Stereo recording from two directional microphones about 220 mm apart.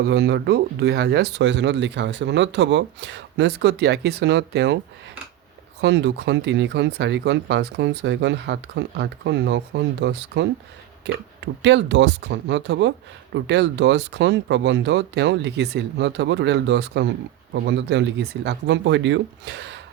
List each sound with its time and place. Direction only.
0.0 s speech: 50° right (ahead or behind)
5.8 s speech: 50° right (ahead or behind)